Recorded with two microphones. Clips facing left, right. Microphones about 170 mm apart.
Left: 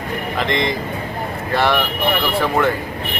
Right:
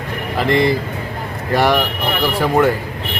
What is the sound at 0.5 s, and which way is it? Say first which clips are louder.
Speech: right 7 dB; 35° right (ahead or behind).